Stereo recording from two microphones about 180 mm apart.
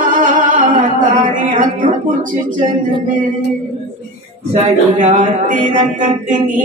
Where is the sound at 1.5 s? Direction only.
50° right (ahead or behind).